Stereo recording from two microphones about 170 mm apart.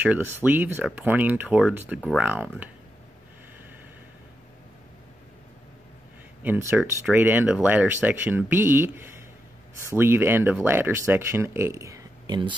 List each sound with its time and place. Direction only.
0.0 s speech: 10° right (ahead or behind)
6.4 s speech: 15° right (ahead or behind)